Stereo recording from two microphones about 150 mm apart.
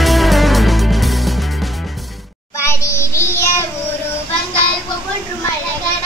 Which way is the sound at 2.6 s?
20° left (ahead or behind).